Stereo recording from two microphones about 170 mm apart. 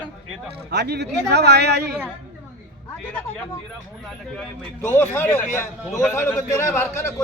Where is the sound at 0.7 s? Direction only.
90° right.